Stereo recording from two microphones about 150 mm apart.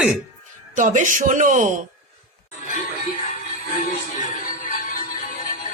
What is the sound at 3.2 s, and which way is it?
Music, 65° left (ahead or behind).